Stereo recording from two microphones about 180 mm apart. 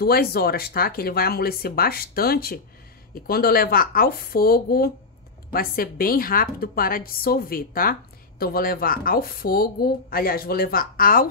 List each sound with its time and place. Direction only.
0.0 s a woman's voice: 60° left (ahead or behind)